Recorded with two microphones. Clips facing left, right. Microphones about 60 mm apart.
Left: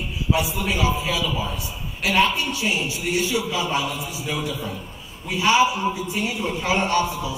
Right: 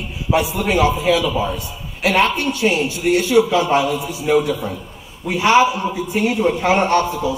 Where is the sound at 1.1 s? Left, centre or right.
Right.